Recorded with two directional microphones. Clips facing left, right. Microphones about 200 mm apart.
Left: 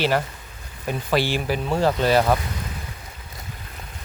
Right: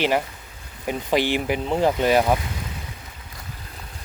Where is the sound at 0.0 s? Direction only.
15° right (ahead or behind).